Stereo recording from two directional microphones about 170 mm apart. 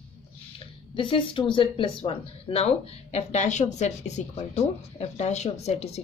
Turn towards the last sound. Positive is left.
turn(degrees=40)  # may be behind; listen again after turning